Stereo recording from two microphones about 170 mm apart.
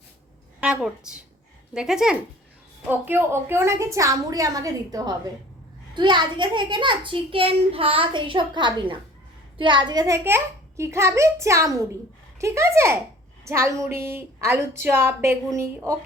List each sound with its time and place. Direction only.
0.6 s a woman's voice: 5° right (ahead or behind)